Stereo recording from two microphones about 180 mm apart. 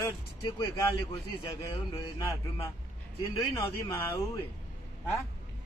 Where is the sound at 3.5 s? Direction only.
15° left (ahead or behind).